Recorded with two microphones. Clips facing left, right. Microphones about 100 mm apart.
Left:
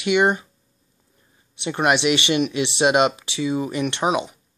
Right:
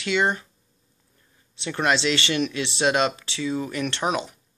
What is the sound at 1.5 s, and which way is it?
Speech, 20° left (ahead or behind).